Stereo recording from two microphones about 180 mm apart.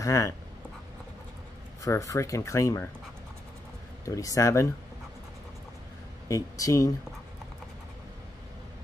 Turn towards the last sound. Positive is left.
turn(degrees=20)  # may be behind; listen again after turning